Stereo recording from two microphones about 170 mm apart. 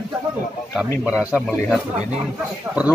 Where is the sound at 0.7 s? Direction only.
5° right (ahead or behind).